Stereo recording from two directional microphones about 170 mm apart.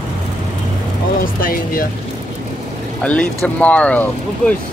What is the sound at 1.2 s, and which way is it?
Speech, 55° left (ahead or behind).